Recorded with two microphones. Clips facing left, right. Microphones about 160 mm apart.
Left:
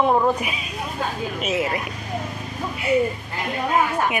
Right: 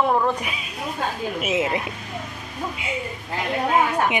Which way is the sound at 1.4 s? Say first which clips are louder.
Right 1 dB; 20° right (ahead or behind).